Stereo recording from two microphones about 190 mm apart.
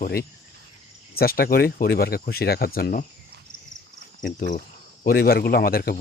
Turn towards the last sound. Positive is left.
turn(degrees=50)  # may be behind; listen again after turning